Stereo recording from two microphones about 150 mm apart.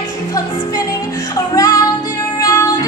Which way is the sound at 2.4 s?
25° left (ahead or behind).